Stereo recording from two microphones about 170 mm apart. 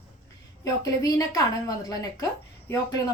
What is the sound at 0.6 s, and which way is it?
A woman's voice, 20° left (ahead or behind).